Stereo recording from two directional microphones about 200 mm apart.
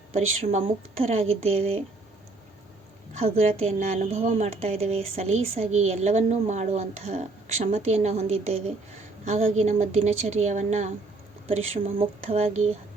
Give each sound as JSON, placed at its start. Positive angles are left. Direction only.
{"t": 0.1, "sound": "a woman's voice", "side_deg": -30}
{"t": 3.1, "sound": "a woman's voice", "side_deg": -30}